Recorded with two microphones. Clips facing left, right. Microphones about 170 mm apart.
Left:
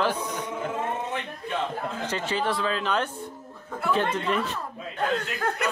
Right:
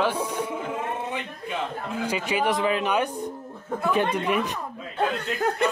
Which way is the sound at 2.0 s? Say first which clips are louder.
Right 4 dB; 10° right (ahead or behind).